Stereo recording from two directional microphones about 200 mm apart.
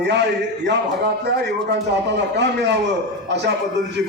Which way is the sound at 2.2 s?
60° right (ahead or behind).